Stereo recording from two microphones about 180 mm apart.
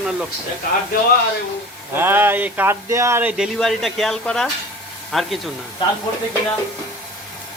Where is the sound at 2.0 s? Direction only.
10° right (ahead or behind).